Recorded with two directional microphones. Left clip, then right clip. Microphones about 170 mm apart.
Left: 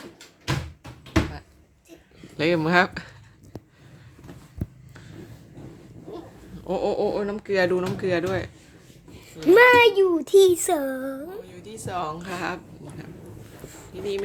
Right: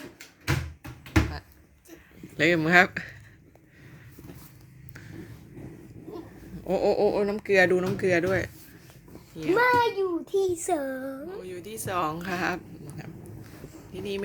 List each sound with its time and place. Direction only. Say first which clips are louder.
0.8 s bouncing: left 3 dB; 25° right (ahead or behind)
2.4 s speech: even; 10° left (ahead or behind)
6.7 s speech: right 1 dB; 5° right (ahead or behind)
9.6 s a child's voice: left 7 dB; 40° left (ahead or behind)
10.5 s speech: left 5 dB; 15° left (ahead or behind)
11.4 s speech: right 2 dB; 60° right (ahead or behind); by 12.5 s 30° right (ahead or behind)
13.9 s speech: left 4 dB; 40° right (ahead or behind)